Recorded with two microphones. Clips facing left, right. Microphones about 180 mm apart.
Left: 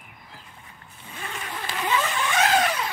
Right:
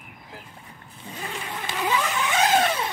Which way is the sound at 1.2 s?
20° right (ahead or behind).